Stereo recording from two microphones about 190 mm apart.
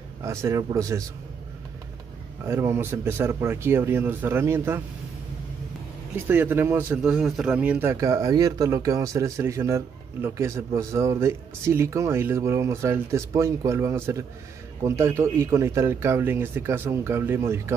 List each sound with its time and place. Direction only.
0.2 s a man's voice: 15° right (ahead or behind)
2.4 s a man's voice: 15° right (ahead or behind)
6.1 s a man's voice: 10° right (ahead or behind)